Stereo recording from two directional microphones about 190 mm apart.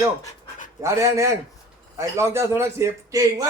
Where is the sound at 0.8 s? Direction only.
15° right (ahead or behind).